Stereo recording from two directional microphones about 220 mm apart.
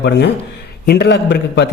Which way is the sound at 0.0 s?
50° left (ahead or behind).